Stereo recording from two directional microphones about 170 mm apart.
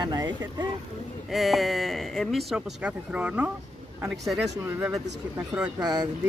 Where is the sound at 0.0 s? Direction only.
25° right (ahead or behind).